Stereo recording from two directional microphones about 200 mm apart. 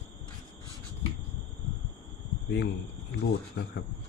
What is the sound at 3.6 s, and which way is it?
Speech, 55° left (ahead or behind).